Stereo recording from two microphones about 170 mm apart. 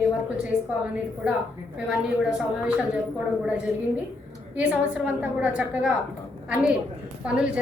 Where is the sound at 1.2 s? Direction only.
5° right (ahead or behind).